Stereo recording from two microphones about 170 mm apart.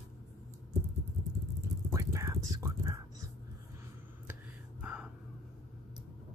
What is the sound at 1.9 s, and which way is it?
Whispering, 20° right (ahead or behind).